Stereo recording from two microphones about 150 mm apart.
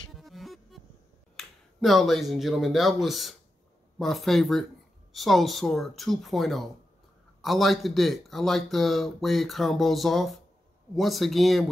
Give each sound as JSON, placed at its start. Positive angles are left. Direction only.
{"t": 0.1, "sound": "music", "side_deg": 0}
{"t": 1.3, "sound": "speech", "side_deg": 0}